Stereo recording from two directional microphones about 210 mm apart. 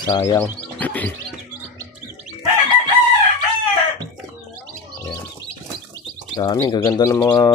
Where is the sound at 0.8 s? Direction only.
5° left (ahead or behind).